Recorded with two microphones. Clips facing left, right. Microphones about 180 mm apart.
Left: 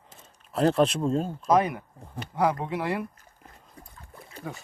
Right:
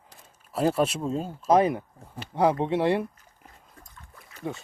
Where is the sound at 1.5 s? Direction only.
30° right (ahead or behind).